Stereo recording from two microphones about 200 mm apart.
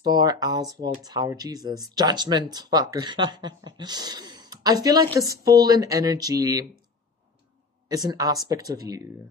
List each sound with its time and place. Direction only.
0.0 s speech: 20° right (ahead or behind)
7.9 s speech: 20° right (ahead or behind)